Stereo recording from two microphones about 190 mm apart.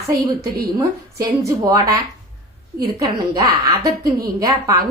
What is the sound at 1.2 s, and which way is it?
Speech, 20° right (ahead or behind).